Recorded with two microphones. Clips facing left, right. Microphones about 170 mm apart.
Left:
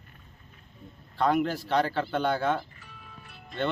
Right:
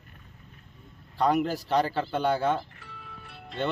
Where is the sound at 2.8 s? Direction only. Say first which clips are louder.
Right 3 dB; 65° right (ahead or behind).